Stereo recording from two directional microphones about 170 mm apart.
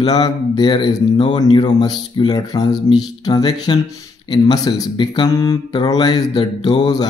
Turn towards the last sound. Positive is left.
turn(degrees=25)  # may be behind; listen again after turning